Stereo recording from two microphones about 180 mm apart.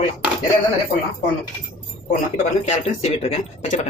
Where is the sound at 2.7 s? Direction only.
35° left (ahead or behind).